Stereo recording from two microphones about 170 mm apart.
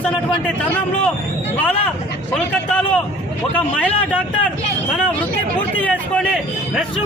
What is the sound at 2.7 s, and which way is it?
Speech, 5° left (ahead or behind).